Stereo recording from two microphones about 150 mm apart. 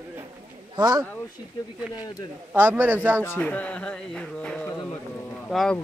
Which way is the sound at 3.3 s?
10° left (ahead or behind).